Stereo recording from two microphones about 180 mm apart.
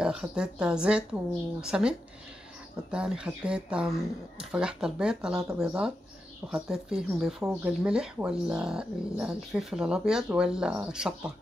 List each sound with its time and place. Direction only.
0.0 s speech: 5° right (ahead or behind)